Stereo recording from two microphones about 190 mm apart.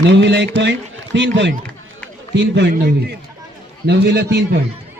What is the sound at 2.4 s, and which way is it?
A man's voice, 65° right (ahead or behind).